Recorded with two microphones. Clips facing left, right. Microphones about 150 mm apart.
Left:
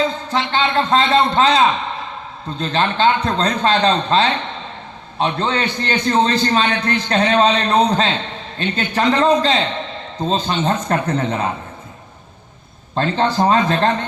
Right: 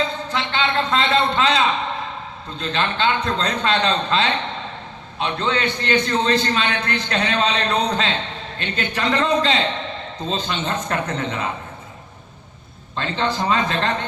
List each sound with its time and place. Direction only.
0.3 s a man's voice: 40° left (ahead or behind)
13.0 s a man's voice: 40° left (ahead or behind)